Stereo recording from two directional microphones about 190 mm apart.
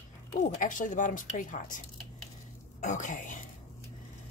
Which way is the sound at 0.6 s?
45° left (ahead or behind).